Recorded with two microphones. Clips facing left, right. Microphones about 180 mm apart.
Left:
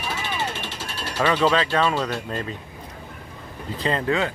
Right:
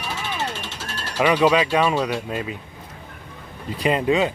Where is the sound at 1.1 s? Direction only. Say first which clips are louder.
Right 3 dB; 15° right (ahead or behind).